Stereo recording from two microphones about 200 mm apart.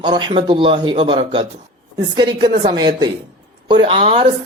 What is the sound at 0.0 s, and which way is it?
Speech, 25° right (ahead or behind).